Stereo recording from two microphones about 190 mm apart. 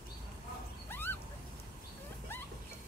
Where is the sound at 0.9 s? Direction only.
10° left (ahead or behind).